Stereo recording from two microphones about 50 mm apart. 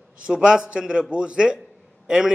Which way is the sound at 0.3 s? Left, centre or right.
Centre.